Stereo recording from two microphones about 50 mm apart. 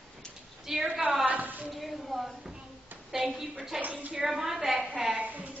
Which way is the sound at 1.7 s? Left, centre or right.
Centre.